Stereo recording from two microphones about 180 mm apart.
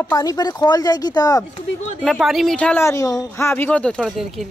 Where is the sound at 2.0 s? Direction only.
Centre (ahead or behind).